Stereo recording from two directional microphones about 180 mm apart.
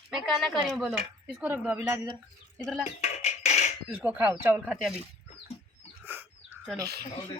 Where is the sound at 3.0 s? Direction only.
40° left (ahead or behind).